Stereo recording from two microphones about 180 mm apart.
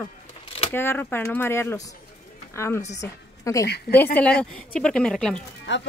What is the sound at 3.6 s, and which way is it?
Speech, 65° left (ahead or behind).